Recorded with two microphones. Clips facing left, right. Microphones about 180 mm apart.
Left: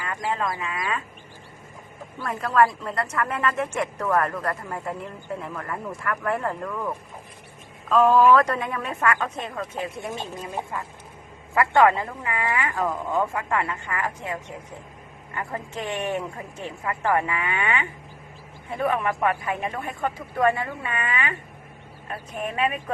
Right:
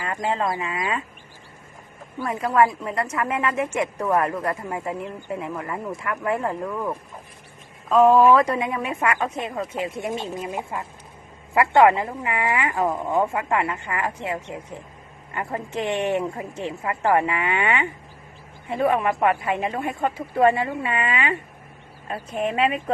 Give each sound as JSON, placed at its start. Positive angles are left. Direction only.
{"t": 0.0, "sound": "a woman's voice", "side_deg": -25}
{"t": 2.4, "sound": "a woman's voice", "side_deg": -15}
{"t": 7.9, "sound": "a woman's voice", "side_deg": -5}